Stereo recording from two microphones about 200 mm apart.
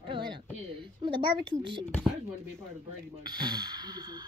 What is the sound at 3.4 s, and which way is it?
Speech, 20° right (ahead or behind).